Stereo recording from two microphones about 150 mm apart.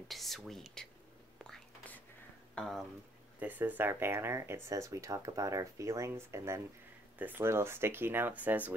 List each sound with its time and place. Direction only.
0.1 s speech: centre (ahead or behind)
1.4 s whispering: 5° left (ahead or behind)
2.5 s speech: centre (ahead or behind)
3.3 s speech: 10° right (ahead or behind)